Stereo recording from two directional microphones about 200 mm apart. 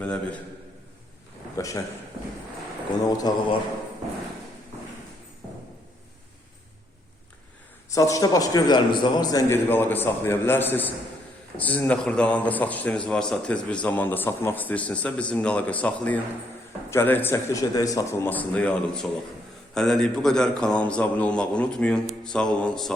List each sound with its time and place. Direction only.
0.0 s a man's voice: 5° left (ahead or behind)
1.5 s a man's voice: 15° left (ahead or behind)
3.1 s a man's voice: 20° left (ahead or behind)
7.9 s a man's voice: 15° left (ahead or behind)